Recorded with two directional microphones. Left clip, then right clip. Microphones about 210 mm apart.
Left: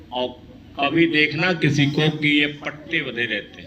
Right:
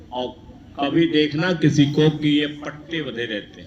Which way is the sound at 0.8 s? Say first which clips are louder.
Left 1 dB; 55° right (ahead or behind).